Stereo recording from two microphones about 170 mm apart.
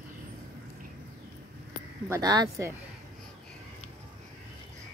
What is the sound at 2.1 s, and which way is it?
Speech, 20° right (ahead or behind).